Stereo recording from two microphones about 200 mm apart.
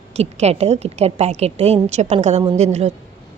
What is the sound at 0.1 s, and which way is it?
A woman's voice, 30° right (ahead or behind).